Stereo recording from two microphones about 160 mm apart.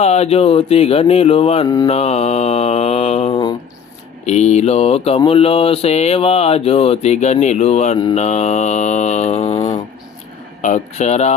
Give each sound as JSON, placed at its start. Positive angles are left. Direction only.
{"t": 0.0, "sound": "mantra", "side_deg": 40}
{"t": 1.6, "sound": "mantra", "side_deg": 25}
{"t": 1.9, "sound": "music", "side_deg": 40}
{"t": 4.3, "sound": "mantra", "side_deg": 45}